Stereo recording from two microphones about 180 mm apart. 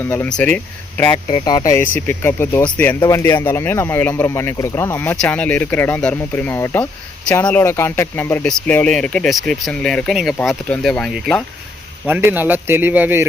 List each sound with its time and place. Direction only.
0.0 s speech: 10° left (ahead or behind)
1.3 s speech: 25° left (ahead or behind)
2.0 s speech: 15° left (ahead or behind)
12.0 s a man's voice: 10° right (ahead or behind)